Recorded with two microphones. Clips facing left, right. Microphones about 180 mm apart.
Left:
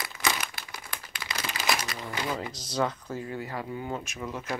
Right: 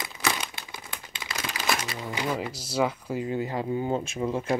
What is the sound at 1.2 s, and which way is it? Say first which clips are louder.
Crumpling: right 1 dB; 5° right (ahead or behind).